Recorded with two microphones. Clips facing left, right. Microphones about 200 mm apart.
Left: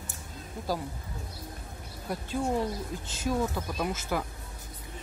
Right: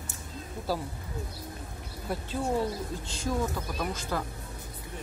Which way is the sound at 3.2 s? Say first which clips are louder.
Left 2 dB; 15° left (ahead or behind).